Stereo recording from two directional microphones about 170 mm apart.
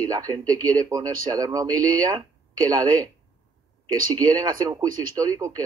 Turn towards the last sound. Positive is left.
turn(degrees=-20)  # may be behind; listen again after turning